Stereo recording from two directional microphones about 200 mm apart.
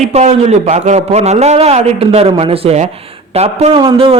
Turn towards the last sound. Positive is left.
turn(degrees=-25)  # may be behind; listen again after turning